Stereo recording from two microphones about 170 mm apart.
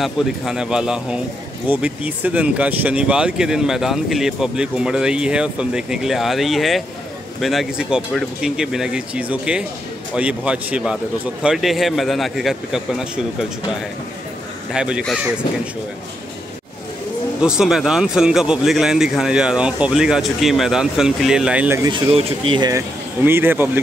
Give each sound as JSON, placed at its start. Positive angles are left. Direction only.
{"t": 0.0, "sound": "speech", "side_deg": 0}
{"t": 14.7, "sound": "speech", "side_deg": -5}
{"t": 17.4, "sound": "speech", "side_deg": -5}
{"t": 21.9, "sound": "speech", "side_deg": -35}